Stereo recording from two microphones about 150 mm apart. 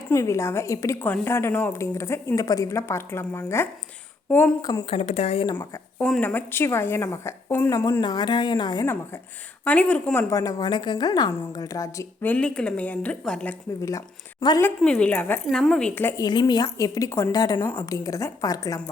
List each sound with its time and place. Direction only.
0.1 s a woman's voice: 20° left (ahead or behind)
4.9 s speech: 45° left (ahead or behind)
5.5 s a woman's voice: 10° left (ahead or behind); by 8.9 s 25° left (ahead or behind)
9.6 s a woman's voice: 10° left (ahead or behind)
10.2 s a woman's voice: 25° left (ahead or behind); by 13.6 s 5° left (ahead or behind)
14.8 s a woman's voice: 5° left (ahead or behind)
15.4 s a woman's voice: centre (ahead or behind)
16.0 s a woman's voice: 15° left (ahead or behind)
16.2 s a woman's voice: 30° left (ahead or behind)